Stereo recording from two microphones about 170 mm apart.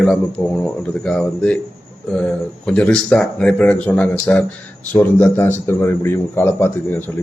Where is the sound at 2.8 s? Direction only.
5° left (ahead or behind).